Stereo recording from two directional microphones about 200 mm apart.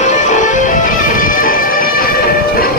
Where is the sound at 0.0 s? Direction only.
40° left (ahead or behind).